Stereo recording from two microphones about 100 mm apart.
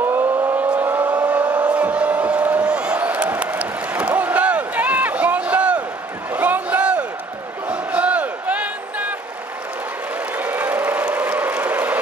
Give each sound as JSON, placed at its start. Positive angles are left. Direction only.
{"t": 0.0, "sound": "vehicle", "side_deg": -20}
{"t": 1.2, "sound": "a sound", "side_deg": -15}
{"t": 10.3, "sound": "applause", "side_deg": -20}